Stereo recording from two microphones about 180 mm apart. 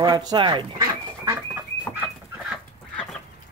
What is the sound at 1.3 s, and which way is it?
Chicken, 10° right (ahead or behind).